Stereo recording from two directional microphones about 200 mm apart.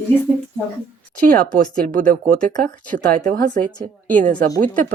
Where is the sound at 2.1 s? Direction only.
40° right (ahead or behind).